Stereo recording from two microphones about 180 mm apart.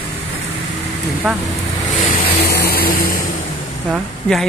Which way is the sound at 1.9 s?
40° left (ahead or behind).